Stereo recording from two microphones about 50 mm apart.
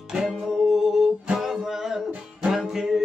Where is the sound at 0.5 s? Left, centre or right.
Centre.